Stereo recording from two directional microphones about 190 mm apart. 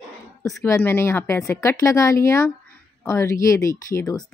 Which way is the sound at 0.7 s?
10° left (ahead or behind).